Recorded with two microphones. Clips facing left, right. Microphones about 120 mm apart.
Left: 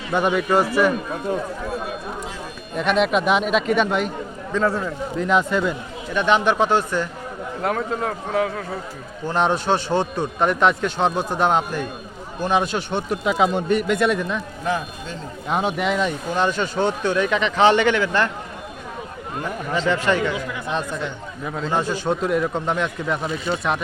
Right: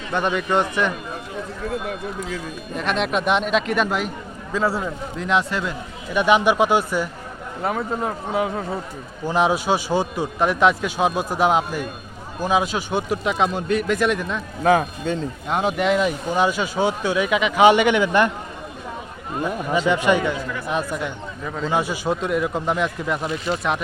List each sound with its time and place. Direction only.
0.1 s a man's voice: 10° left (ahead or behind)
2.7 s speech: centre (ahead or behind)
6.1 s speech: 10° right (ahead or behind)
9.2 s speech: 5° right (ahead or behind)
14.6 s a man's voice: 70° right (ahead or behind)
15.4 s speech: centre (ahead or behind); by 18.3 s 15° right (ahead or behind)
19.4 s speech: 15° right (ahead or behind)
21.4 s speech: 5° left (ahead or behind)
21.7 s speech: 10° right (ahead or behind)